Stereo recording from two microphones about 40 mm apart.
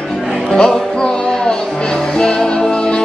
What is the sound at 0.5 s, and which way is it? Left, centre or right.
Music, centre.